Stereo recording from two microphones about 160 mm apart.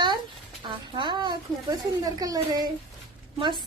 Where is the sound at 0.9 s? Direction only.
30° right (ahead or behind).